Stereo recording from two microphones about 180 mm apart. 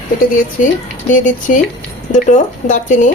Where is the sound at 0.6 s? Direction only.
45° left (ahead or behind).